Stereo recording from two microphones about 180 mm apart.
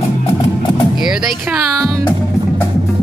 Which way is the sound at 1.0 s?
Centre (ahead or behind).